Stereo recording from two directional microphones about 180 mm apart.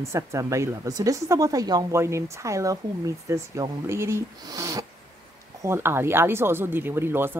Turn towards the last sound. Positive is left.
turn(degrees=-10)  # may be behind; listen again after turning